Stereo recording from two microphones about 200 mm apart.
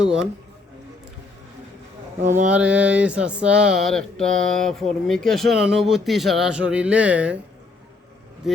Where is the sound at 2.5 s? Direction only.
5° right (ahead or behind).